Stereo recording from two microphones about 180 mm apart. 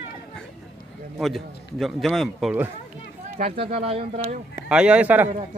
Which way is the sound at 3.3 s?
35° right (ahead or behind).